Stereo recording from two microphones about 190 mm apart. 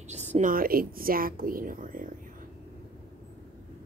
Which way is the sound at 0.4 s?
50° right (ahead or behind).